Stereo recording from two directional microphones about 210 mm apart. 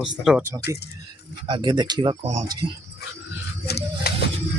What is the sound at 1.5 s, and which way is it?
Speech, 20° right (ahead or behind).